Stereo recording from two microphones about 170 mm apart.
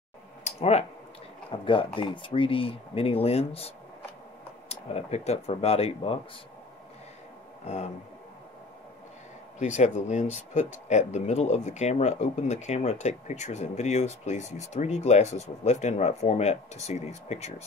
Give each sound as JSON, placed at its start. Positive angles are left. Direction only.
{"t": 0.4, "sound": "a sound", "side_deg": 40}
{"t": 1.6, "sound": "speech", "side_deg": 30}
{"t": 7.6, "sound": "speech", "side_deg": 40}
{"t": 9.6, "sound": "speech", "side_deg": 45}